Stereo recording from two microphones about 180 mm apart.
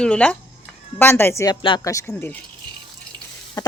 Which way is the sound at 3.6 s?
20° left (ahead or behind).